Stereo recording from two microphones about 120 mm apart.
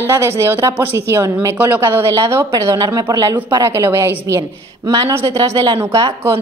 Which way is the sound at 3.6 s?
20° right (ahead or behind).